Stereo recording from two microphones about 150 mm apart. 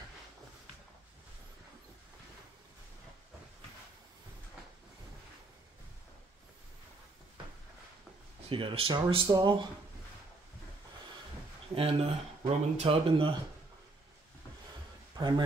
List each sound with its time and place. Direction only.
8.5 s speech: 35° right (ahead or behind)
11.7 s speech: 40° right (ahead or behind)
15.1 s a man's voice: 30° right (ahead or behind)